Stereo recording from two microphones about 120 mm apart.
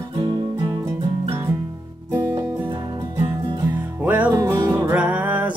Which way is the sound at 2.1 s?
30° right (ahead or behind).